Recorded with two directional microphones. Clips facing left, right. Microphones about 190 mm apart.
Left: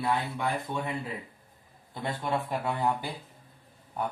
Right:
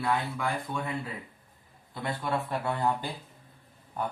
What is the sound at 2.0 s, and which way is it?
Speech, 20° left (ahead or behind).